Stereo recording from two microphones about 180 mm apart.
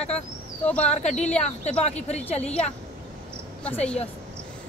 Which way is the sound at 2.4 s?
5° left (ahead or behind).